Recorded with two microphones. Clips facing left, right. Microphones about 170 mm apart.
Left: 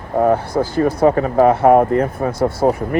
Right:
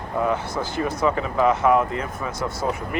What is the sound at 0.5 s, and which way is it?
Speech, 50° left (ahead or behind).